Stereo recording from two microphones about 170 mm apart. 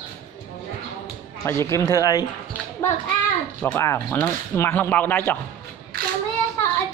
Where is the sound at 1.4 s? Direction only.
15° left (ahead or behind).